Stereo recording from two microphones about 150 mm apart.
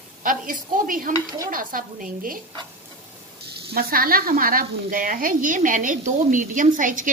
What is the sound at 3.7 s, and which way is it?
A woman's voice, 85° right.